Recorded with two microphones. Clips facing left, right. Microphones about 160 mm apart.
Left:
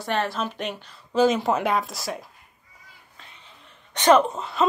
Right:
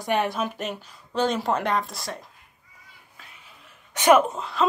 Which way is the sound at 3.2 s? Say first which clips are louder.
Left 1 dB; 5° right (ahead or behind).